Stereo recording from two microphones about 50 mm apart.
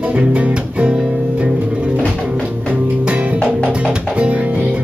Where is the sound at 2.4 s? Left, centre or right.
Right.